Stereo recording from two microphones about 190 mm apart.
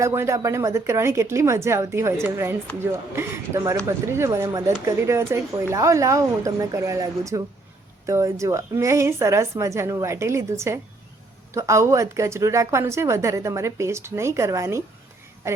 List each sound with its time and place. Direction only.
0.0 s a woman's voice: 15° right (ahead or behind)